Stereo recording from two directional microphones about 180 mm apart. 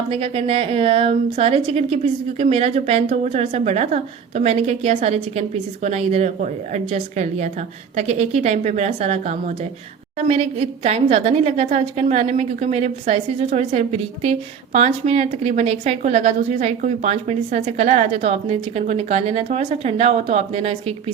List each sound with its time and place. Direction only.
0.1 s a woman's voice: 35° right (ahead or behind)